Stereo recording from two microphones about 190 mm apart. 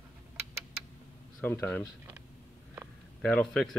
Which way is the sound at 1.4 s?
10° left (ahead or behind).